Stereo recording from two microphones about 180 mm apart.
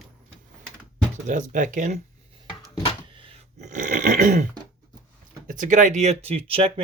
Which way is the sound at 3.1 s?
30° right (ahead or behind).